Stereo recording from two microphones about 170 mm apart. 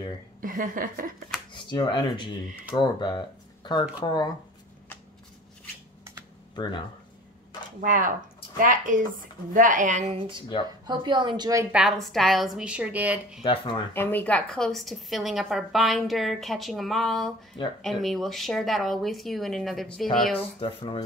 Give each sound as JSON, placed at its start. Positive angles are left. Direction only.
{"t": 0.4, "sound": "a woman's voice", "side_deg": -55}
{"t": 1.7, "sound": "speech", "side_deg": 25}
{"t": 6.5, "sound": "speech", "side_deg": 25}
{"t": 7.8, "sound": "a woman's voice", "side_deg": -50}
{"t": 10.9, "sound": "a woman's voice", "side_deg": -25}
{"t": 11.7, "sound": "a woman's voice", "side_deg": 0}
{"t": 13.4, "sound": "speech", "side_deg": 30}
{"t": 13.9, "sound": "a woman's voice", "side_deg": 10}
{"t": 20.3, "sound": "speech", "side_deg": 30}